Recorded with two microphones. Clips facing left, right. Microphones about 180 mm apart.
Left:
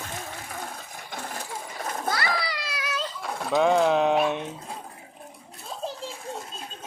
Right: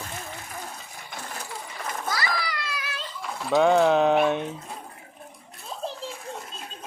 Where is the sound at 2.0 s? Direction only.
60° left (ahead or behind).